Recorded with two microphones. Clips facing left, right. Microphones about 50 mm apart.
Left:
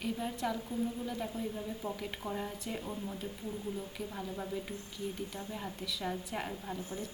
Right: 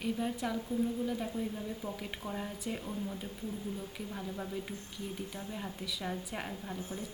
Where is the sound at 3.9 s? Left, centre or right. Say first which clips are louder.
Even; centre.